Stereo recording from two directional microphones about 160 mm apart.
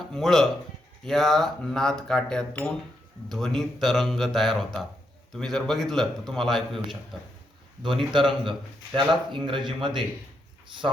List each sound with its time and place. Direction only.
0.0 s speech: centre (ahead or behind)
8.1 s speech: 30° right (ahead or behind)